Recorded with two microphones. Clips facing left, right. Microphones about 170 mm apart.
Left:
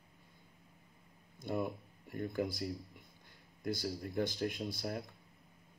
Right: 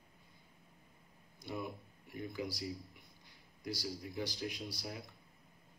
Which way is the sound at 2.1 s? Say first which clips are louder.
Left 5 dB; 55° left (ahead or behind).